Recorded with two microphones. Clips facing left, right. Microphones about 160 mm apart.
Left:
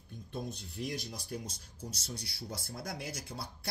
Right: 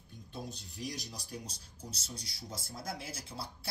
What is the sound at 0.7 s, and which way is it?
Speech, 60° left (ahead or behind).